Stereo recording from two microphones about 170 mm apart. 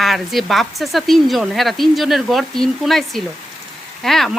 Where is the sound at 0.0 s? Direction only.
Centre (ahead or behind).